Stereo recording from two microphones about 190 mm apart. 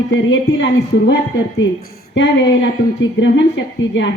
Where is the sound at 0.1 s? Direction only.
80° left.